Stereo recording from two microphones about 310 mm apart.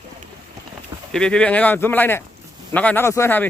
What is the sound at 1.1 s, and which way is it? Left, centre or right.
A man's voice, centre.